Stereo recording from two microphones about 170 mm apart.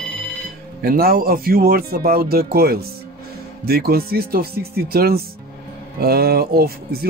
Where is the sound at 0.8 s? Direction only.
60° right (ahead or behind).